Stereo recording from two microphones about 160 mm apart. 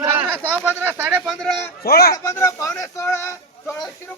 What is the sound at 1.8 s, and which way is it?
Speech, 75° left (ahead or behind).